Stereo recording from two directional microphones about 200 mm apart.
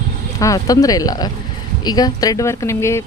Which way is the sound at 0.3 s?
15° left (ahead or behind).